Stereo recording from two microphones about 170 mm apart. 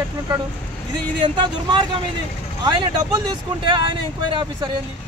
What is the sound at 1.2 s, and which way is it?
Speech, 30° right (ahead or behind).